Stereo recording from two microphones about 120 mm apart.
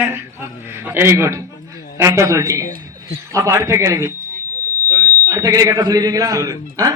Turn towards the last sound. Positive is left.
turn(degrees=-30)  # may be behind; listen again after turning